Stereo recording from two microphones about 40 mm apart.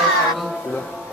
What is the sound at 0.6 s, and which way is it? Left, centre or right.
Speech, left.